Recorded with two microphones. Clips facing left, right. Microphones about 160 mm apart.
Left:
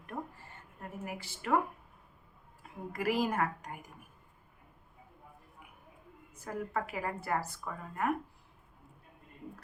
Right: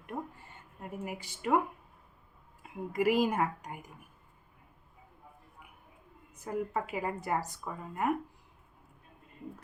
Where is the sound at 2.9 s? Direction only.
15° right (ahead or behind).